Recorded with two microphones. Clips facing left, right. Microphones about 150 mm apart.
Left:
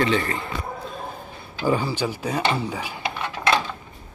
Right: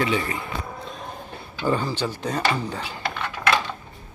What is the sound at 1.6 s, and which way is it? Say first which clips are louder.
Speech: left 1 dB; 10° left (ahead or behind).